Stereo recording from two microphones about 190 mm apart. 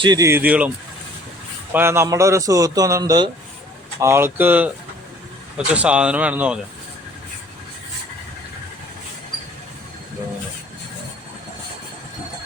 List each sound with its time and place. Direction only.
0.0 s a man's voice: 20° right (ahead or behind)
1.7 s a man's voice: 15° right (ahead or behind)